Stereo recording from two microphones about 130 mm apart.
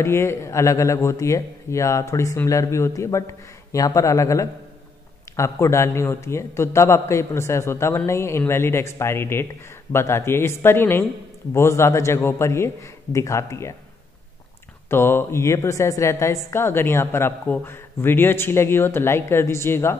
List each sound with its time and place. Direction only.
0.0 s a woman's voice: 20° left (ahead or behind)
14.9 s a woman's voice: 20° left (ahead or behind)